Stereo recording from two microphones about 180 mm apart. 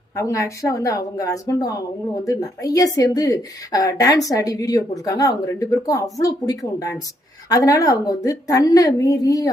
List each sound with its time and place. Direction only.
0.2 s speech: 15° left (ahead or behind)